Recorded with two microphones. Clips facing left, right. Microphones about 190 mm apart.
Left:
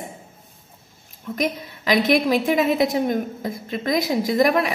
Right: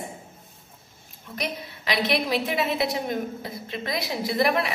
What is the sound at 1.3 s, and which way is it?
A woman's voice, 45° left (ahead or behind).